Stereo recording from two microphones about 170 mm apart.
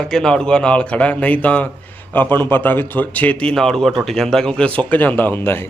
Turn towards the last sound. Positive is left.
turn(degrees=10)  # may be behind; listen again after turning